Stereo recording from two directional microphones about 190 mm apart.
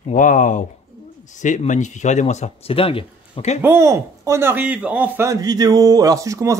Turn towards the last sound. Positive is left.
turn(degrees=-15)  # may be behind; listen again after turning